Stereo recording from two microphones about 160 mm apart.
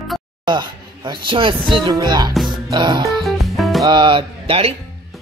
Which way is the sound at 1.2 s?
35° right (ahead or behind).